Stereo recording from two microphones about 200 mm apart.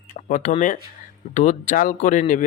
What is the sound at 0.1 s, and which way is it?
Speech, 40° left (ahead or behind).